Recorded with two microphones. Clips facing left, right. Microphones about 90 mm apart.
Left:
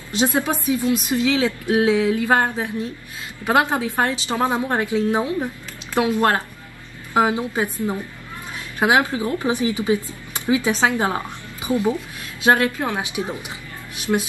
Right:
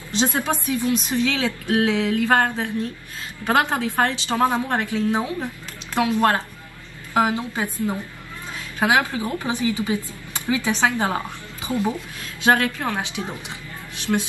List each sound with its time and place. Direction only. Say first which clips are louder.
0.2 s a woman's voice: left 2 dB; 20° left (ahead or behind)